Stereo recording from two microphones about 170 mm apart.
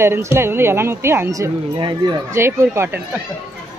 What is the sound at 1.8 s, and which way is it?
Speech, 30° right (ahead or behind).